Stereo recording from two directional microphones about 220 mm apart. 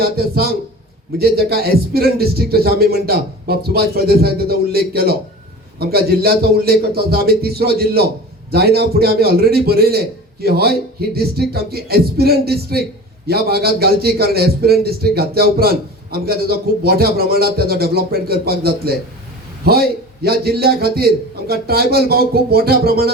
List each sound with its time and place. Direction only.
0.0 s a man's voice: 45° right (ahead or behind)